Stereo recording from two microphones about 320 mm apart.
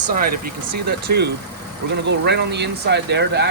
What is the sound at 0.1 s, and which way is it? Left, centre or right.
Speech, right.